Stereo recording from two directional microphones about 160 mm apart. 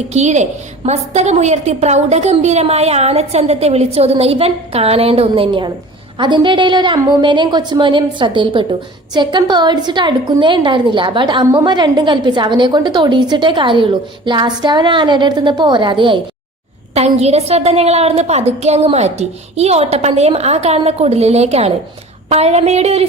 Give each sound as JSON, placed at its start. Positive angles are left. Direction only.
{"t": 0.1, "sound": "a woman's voice", "side_deg": -45}
{"t": 16.9, "sound": "a woman's voice", "side_deg": -40}